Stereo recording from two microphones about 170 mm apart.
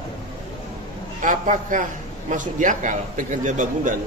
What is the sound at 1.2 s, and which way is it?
A man's voice, 50° right (ahead or behind).